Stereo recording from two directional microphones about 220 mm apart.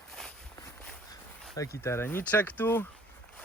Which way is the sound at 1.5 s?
10° left (ahead or behind).